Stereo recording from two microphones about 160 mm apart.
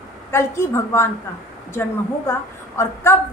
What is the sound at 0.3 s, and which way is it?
Speech, 15° left (ahead or behind).